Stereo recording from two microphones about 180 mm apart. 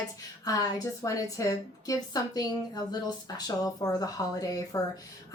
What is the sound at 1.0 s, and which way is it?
A woman's voice, 20° left (ahead or behind).